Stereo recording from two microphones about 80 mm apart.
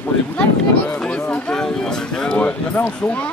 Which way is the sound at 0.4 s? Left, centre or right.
Centre.